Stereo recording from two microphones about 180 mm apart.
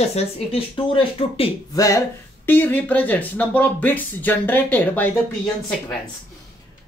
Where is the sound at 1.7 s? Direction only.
20° left (ahead or behind).